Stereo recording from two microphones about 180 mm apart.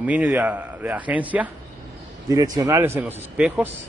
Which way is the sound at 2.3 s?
20° right (ahead or behind).